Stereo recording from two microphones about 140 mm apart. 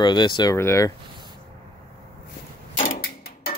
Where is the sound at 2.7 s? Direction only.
85° left.